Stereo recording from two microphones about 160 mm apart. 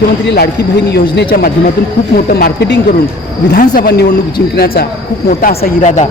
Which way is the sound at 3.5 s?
75° left (ahead or behind).